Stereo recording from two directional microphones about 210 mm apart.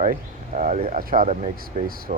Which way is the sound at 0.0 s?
40° right (ahead or behind).